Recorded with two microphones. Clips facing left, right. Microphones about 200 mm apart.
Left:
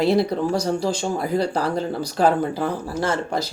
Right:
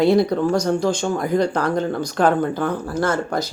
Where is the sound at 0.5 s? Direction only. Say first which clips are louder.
Right 3 dB; 30° left (ahead or behind).